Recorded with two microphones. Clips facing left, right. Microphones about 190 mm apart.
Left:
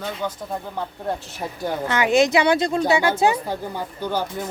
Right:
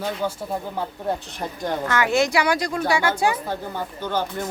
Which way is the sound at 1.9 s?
20° left (ahead or behind).